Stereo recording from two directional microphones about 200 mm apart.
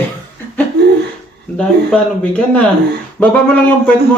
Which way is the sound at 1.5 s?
5° left (ahead or behind).